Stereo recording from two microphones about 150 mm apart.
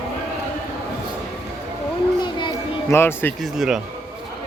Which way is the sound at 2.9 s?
15° left (ahead or behind).